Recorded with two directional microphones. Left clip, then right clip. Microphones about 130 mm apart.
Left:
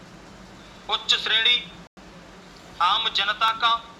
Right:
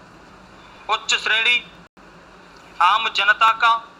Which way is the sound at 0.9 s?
35° right (ahead or behind).